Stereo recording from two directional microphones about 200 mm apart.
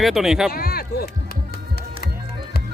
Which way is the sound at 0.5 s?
50° left (ahead or behind).